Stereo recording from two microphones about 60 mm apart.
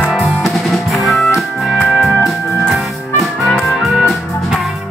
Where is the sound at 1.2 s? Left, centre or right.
Centre.